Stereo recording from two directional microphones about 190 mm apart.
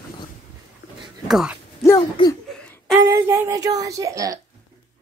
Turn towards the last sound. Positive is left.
turn(degrees=-15)  # may be behind; listen again after turning